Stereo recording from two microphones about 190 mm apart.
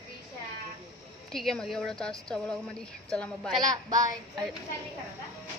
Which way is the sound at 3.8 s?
20° right (ahead or behind).